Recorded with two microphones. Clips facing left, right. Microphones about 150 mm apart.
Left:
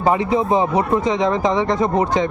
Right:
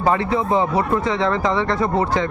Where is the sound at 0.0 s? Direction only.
15° left (ahead or behind).